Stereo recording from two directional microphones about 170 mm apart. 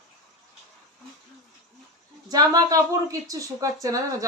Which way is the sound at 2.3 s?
20° right (ahead or behind).